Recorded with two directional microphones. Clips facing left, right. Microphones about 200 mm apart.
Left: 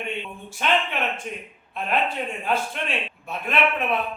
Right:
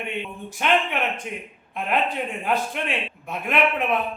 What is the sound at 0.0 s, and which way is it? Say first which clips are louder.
A man's voice: right 1 dB; 15° right (ahead or behind).